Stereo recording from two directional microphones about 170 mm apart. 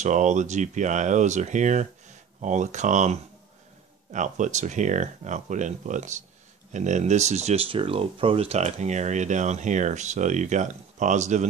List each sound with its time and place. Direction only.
0.0 s speech: 45° right (ahead or behind)